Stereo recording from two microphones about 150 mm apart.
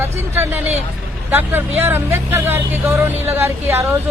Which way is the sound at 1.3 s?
15° right (ahead or behind).